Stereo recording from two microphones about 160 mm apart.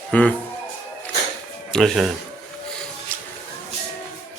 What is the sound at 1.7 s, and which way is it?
Speech, centre (ahead or behind).